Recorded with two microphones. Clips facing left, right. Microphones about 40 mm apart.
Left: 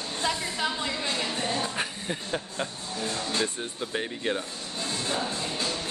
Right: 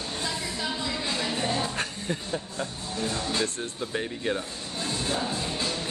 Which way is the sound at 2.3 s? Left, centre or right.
Left.